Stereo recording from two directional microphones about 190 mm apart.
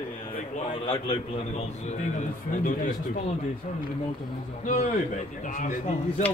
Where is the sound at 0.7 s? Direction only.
30° left (ahead or behind).